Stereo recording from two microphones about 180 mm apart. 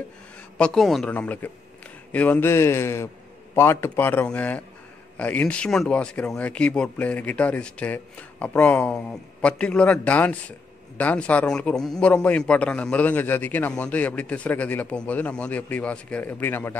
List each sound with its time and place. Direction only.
0.6 s a man's voice: centre (ahead or behind)